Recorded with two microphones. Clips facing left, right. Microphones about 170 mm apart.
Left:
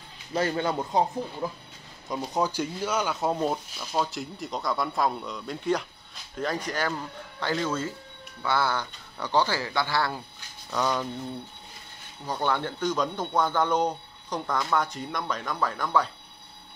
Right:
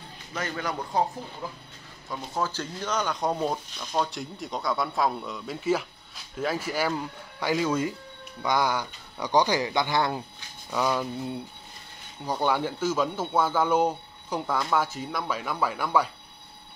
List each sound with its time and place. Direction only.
0.3 s speech: 30° left (ahead or behind)
2.0 s a man's voice: 15° left (ahead or behind); by 10.2 s 20° right (ahead or behind)
10.7 s a man's voice: 5° right (ahead or behind)